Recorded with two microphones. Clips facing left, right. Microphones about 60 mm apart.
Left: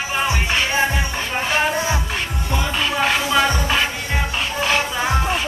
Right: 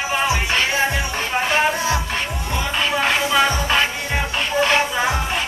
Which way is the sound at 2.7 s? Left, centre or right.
Centre.